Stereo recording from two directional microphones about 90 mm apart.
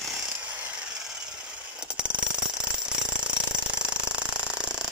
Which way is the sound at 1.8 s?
10° right (ahead or behind).